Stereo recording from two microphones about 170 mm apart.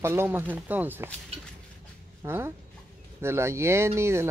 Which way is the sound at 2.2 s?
15° right (ahead or behind).